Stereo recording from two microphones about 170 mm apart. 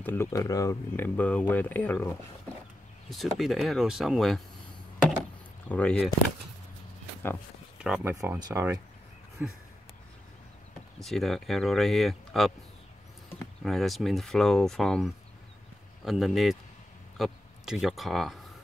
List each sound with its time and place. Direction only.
0.0 s speech: 15° left (ahead or behind)
3.3 s speech: centre (ahead or behind)
5.7 s speech: 5° left (ahead or behind)
8.0 s speech: 15° right (ahead or behind)
9.4 s speech: 10° right (ahead or behind)
11.0 s speech: centre (ahead or behind)
13.7 s speech: centre (ahead or behind)